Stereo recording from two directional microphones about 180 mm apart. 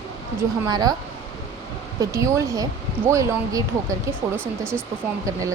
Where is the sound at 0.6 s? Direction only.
20° right (ahead or behind).